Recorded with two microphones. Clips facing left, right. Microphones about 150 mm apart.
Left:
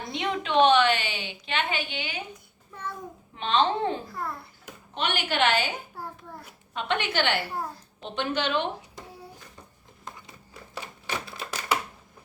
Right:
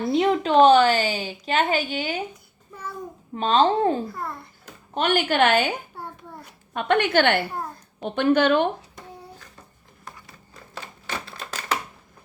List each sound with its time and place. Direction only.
0.2 s a woman's voice: 40° right (ahead or behind)
3.3 s a woman's voice: 40° right (ahead or behind)
4.1 s a child's voice: centre (ahead or behind)
4.9 s a woman's voice: 45° right (ahead or behind)
6.0 s a child's voice: centre (ahead or behind)
6.7 s a woman's voice: 50° right (ahead or behind)
10.2 s typewriter: 15° left (ahead or behind)